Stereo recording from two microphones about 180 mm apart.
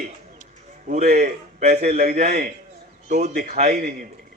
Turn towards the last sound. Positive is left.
turn(degrees=-55)  # may be behind; listen again after turning